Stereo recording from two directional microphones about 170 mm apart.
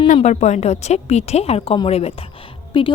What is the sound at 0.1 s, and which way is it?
A woman's voice, 40° left (ahead or behind).